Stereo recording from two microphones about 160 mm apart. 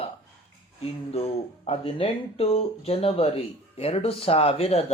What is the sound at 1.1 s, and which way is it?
Speech, 40° left (ahead or behind).